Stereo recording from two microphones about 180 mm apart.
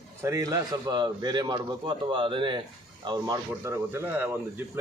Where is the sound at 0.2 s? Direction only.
15° right (ahead or behind).